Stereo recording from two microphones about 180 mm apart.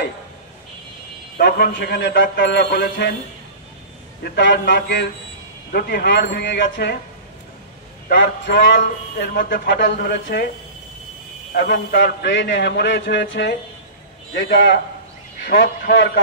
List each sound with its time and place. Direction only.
1.4 s speech: 60° left (ahead or behind)
4.2 s speech: 70° left (ahead or behind)
8.1 s speech: 70° left (ahead or behind)
11.5 s speech: 65° left (ahead or behind)